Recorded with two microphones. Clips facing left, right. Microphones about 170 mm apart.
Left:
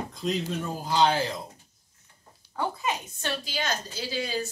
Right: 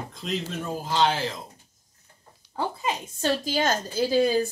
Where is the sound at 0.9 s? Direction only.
Centre (ahead or behind).